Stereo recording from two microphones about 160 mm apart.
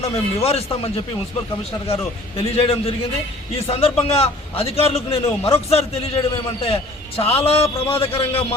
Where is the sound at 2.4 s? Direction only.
40° left (ahead or behind).